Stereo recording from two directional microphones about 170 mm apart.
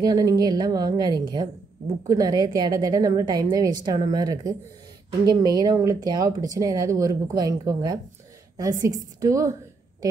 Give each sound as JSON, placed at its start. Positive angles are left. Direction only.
{"t": 0.0, "sound": "speech", "side_deg": -20}